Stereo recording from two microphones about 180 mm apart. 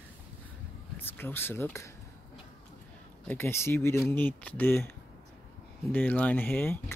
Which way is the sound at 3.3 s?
15° left (ahead or behind).